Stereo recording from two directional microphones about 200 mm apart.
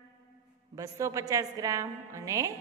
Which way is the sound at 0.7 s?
15° right (ahead or behind).